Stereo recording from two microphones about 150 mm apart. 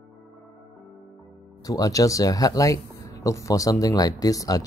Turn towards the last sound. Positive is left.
turn(degrees=25)  # may be behind; listen again after turning